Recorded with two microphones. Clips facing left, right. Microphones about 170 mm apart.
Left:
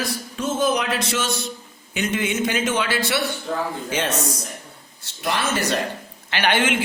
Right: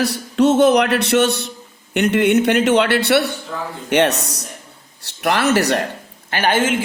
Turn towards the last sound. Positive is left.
turn(degrees=-40)  # may be behind; listen again after turning